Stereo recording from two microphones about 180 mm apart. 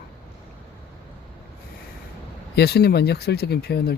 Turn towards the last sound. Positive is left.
turn(degrees=65)  # may be behind; listen again after turning